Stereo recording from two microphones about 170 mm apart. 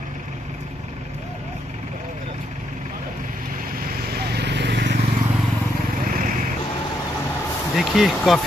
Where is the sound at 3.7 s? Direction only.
60° right (ahead or behind); by 4.7 s 90° right.